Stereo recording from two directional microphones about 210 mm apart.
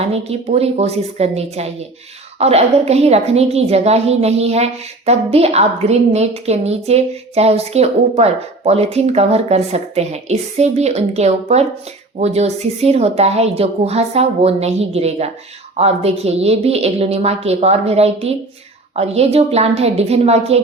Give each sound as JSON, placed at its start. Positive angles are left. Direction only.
{"t": 0.0, "sound": "a woman's voice", "side_deg": -30}